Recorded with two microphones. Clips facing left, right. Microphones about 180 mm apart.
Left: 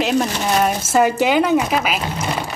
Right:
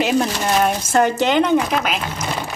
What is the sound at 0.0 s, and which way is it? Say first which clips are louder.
Speech: even; centre (ahead or behind).